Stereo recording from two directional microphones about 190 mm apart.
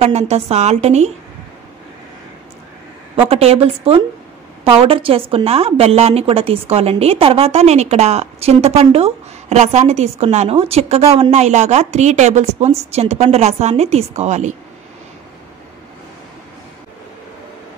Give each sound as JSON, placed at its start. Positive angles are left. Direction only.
{"t": 0.0, "sound": "a woman's voice", "side_deg": -35}
{"t": 3.2, "sound": "a woman's voice", "side_deg": -30}